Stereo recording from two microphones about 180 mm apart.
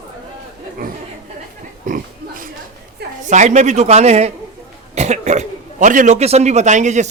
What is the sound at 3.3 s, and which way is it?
Speech, 40° right (ahead or behind).